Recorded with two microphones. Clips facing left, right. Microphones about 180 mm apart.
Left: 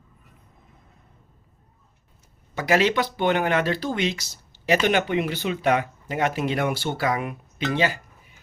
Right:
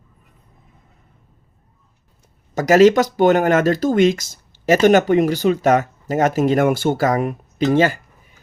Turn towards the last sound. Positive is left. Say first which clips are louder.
# right 8 dB
turn(degrees=-45)  # may be behind; listen again after turning